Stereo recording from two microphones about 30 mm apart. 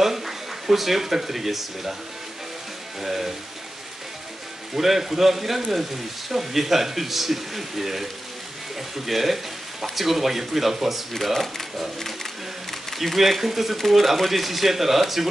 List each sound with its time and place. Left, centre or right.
0.0 s speech: centre
3.0 s speech: centre
4.7 s speech: centre
12.9 s speech: centre